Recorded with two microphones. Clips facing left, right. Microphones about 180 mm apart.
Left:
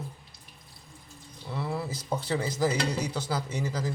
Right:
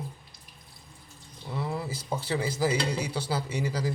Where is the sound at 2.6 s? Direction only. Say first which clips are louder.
Even; 10° right (ahead or behind).